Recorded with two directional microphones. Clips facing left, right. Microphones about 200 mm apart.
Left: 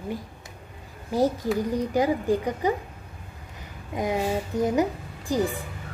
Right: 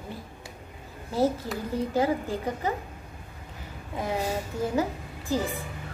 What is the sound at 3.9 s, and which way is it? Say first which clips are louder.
A woman's voice: left 4 dB; 15° left (ahead or behind).